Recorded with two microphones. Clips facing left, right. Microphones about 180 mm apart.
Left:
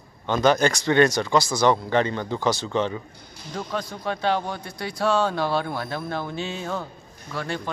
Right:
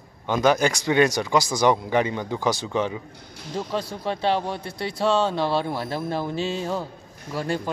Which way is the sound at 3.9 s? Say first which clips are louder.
Even; 30° right (ahead or behind).